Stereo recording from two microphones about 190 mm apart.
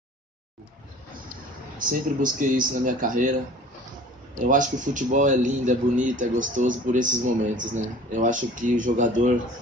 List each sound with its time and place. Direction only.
1.8 s a man's voice: 45° right (ahead or behind)
4.5 s a man's voice: 40° right (ahead or behind)